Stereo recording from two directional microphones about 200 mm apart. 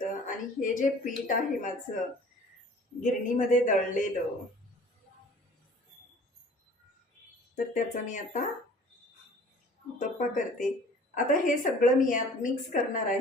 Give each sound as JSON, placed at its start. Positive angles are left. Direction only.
{"t": 0.1, "sound": "a woman's voice", "side_deg": 40}
{"t": 3.0, "sound": "a woman's voice", "side_deg": 40}
{"t": 7.5, "sound": "a woman's voice", "side_deg": 40}
{"t": 10.0, "sound": "a woman's voice", "side_deg": 40}